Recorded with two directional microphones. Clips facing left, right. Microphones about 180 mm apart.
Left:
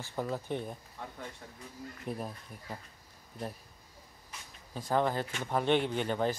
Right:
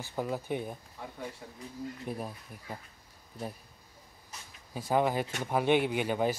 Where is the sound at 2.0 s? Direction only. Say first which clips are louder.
Right 1 dB; 5° right (ahead or behind).